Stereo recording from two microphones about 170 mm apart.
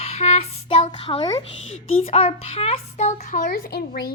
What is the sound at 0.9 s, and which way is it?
A child's voice, 30° left (ahead or behind).